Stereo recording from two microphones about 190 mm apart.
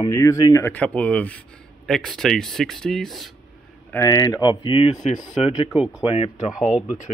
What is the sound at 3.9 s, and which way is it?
Speech, 15° left (ahead or behind).